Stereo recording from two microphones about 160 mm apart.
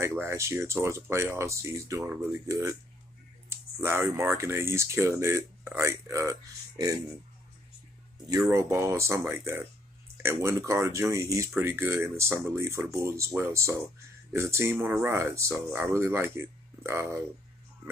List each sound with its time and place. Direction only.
0.0 s speech: 15° right (ahead or behind)
8.3 s speech: 20° right (ahead or behind)